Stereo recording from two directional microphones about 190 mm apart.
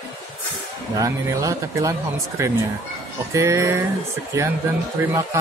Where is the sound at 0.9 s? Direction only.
15° right (ahead or behind).